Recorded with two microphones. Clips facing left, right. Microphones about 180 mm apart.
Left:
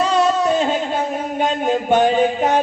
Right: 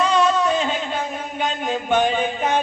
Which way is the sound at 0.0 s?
40° left (ahead or behind).